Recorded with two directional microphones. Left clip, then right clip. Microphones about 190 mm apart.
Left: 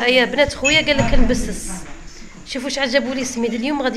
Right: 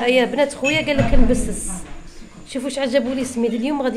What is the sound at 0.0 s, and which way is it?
A woman's voice, 10° right (ahead or behind).